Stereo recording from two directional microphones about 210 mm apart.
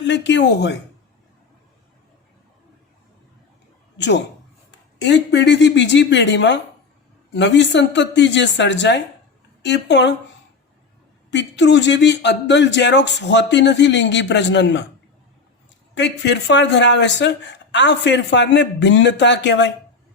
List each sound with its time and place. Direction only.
0.0 s speech: 60° left (ahead or behind)
3.9 s speech: 55° left (ahead or behind)
11.3 s speech: 55° left (ahead or behind)
16.0 s speech: 55° left (ahead or behind)